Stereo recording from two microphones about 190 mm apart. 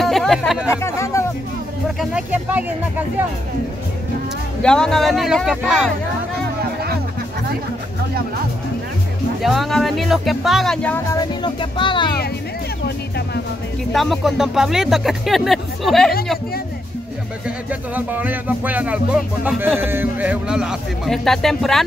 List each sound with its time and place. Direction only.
0.0 s speech: centre (ahead or behind)
0.8 s speech: 15° left (ahead or behind)
2.0 s music: 5° right (ahead or behind)
4.6 s speech: 5° left (ahead or behind)
9.4 s speech: centre (ahead or behind)
11.1 s speech: 25° left (ahead or behind)
13.9 s speech: centre (ahead or behind)
17.6 s music: 10° right (ahead or behind)